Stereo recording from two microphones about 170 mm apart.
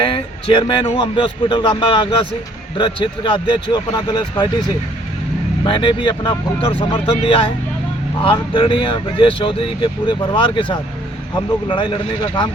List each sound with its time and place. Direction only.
0.0 s speech: 30° left (ahead or behind)
5.6 s speech: 30° left (ahead or behind)